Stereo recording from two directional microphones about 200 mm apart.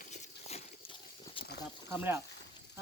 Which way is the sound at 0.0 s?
35° left (ahead or behind).